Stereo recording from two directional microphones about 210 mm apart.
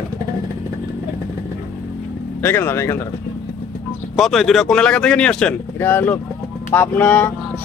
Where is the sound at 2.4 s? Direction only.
10° left (ahead or behind).